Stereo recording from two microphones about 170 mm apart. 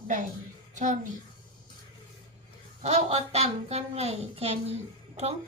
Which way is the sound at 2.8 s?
40° right (ahead or behind).